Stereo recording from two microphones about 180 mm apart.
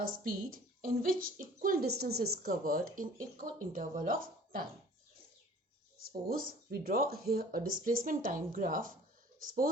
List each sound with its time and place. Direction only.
0.0 s a woman's voice: 50° right (ahead or behind)
6.0 s speech: 55° right (ahead or behind)